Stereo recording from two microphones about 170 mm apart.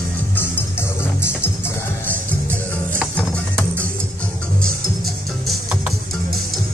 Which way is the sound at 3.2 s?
10° left (ahead or behind).